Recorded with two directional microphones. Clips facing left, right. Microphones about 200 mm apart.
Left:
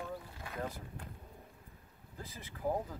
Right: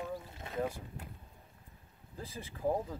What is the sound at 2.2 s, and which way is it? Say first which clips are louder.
Speech: right 4 dB; 30° right (ahead or behind).